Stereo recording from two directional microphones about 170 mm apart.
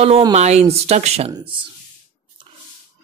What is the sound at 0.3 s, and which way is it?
Speech, 40° right (ahead or behind).